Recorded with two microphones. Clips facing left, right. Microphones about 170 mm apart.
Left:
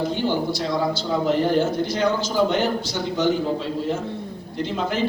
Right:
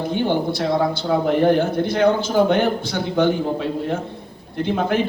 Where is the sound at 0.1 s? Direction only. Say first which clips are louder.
Right 3 dB; 55° right (ahead or behind).